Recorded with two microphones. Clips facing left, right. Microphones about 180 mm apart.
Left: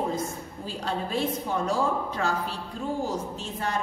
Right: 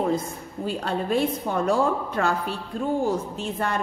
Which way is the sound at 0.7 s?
60° right (ahead or behind).